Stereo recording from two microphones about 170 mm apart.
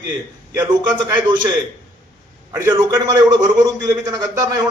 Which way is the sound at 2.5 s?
15° right (ahead or behind).